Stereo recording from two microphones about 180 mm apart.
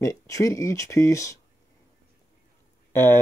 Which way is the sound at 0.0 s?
20° left (ahead or behind).